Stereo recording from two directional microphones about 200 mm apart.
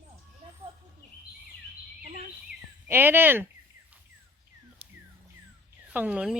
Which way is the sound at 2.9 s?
10° right (ahead or behind).